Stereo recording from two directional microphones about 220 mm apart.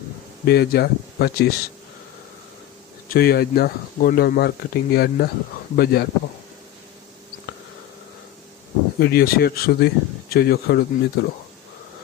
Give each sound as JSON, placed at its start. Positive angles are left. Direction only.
{"t": 0.4, "sound": "speech", "side_deg": 45}
{"t": 3.1, "sound": "speech", "side_deg": 45}
{"t": 9.0, "sound": "speech", "side_deg": 45}